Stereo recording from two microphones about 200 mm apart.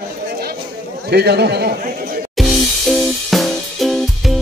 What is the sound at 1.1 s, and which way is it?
Speech, 55° right (ahead or behind).